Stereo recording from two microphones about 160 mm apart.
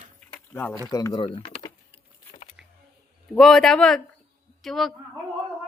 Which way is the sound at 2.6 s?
5° right (ahead or behind).